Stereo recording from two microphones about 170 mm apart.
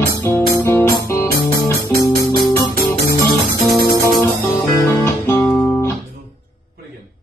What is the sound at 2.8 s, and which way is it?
Music, 60° left (ahead or behind).